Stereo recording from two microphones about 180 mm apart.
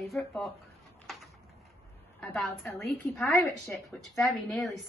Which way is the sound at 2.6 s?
Centre (ahead or behind).